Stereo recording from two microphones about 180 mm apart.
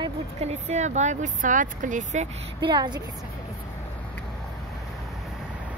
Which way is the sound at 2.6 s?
25° right (ahead or behind).